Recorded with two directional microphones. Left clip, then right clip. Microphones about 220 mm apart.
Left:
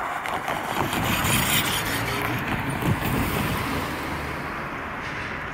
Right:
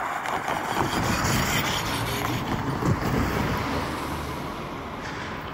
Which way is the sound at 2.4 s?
25° left (ahead or behind).